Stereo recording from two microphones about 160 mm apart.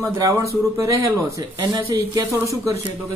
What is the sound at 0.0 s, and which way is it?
Speech, 20° right (ahead or behind).